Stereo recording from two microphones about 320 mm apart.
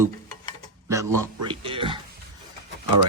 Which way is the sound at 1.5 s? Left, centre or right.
Centre.